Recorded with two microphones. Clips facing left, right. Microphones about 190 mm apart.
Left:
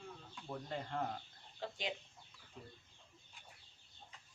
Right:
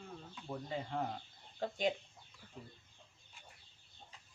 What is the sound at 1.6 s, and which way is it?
Speech, 45° right (ahead or behind).